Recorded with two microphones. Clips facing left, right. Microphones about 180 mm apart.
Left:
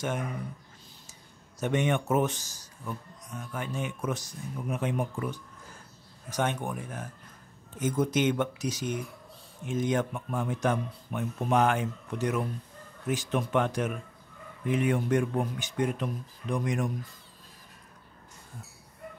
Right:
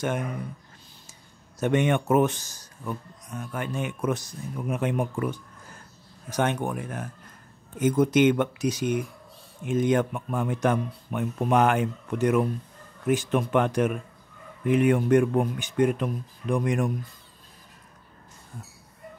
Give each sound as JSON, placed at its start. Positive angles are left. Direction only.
{"t": 1.6, "sound": "speech", "side_deg": -60}
{"t": 6.3, "sound": "speech", "side_deg": -65}